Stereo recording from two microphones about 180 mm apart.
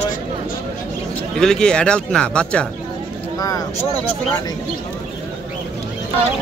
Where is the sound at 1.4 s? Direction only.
5° left (ahead or behind).